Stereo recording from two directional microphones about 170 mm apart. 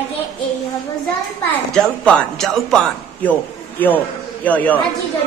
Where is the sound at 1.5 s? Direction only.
5° left (ahead or behind).